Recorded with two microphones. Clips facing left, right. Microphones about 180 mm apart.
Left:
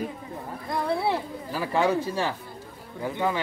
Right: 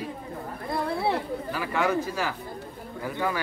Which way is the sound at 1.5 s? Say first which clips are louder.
Left 3 dB; 30° left (ahead or behind).